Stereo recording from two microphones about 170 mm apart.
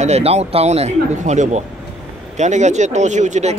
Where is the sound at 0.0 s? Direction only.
40° right (ahead or behind).